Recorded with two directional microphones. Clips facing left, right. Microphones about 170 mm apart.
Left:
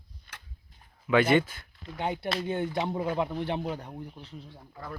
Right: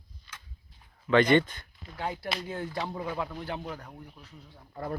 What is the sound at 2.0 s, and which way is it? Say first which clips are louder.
Speech: left 3 dB; 20° left (ahead or behind).